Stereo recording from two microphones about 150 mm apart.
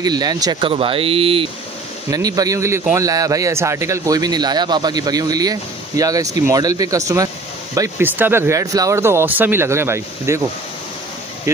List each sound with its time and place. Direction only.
0.0 s speech: 25° right (ahead or behind)
2.0 s speech: 25° right (ahead or behind)